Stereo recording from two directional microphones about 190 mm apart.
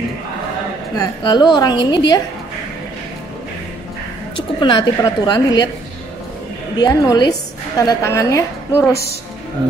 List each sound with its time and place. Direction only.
0.9 s a woman's voice: 20° left (ahead or behind)
4.4 s a woman's voice: 25° left (ahead or behind)
6.8 s a woman's voice: 20° left (ahead or behind)